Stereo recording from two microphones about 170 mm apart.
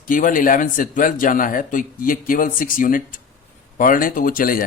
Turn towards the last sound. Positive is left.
turn(degrees=55)  # may be behind; listen again after turning